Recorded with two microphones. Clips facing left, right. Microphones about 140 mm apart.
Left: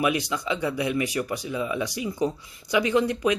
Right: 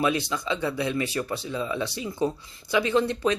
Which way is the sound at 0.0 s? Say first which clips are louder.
Even; 15° left (ahead or behind).